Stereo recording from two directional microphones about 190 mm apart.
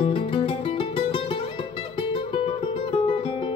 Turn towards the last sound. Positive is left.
turn(degrees=30)  # may be behind; listen again after turning